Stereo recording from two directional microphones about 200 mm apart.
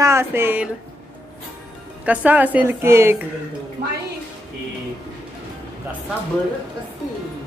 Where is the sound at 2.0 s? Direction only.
5° right (ahead or behind).